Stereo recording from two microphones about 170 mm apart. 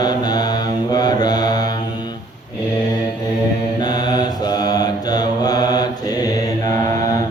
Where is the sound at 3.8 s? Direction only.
25° left (ahead or behind).